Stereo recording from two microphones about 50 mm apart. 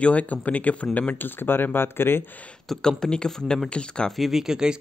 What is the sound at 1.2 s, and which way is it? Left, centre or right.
Speech, left.